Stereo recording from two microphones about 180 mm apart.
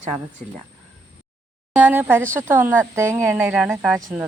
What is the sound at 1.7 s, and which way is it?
Speech, 10° right (ahead or behind).